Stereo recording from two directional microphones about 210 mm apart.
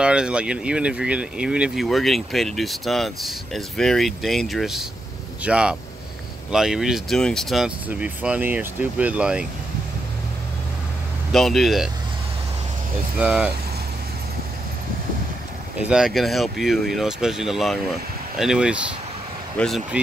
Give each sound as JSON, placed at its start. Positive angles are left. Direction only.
{"t": 0.0, "sound": "speech", "side_deg": -5}
{"t": 11.3, "sound": "speech", "side_deg": 0}
{"t": 13.2, "sound": "speech", "side_deg": -5}
{"t": 15.8, "sound": "speech", "side_deg": -5}